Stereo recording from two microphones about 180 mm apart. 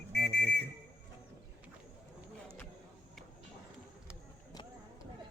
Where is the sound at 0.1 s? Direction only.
65° left (ahead or behind).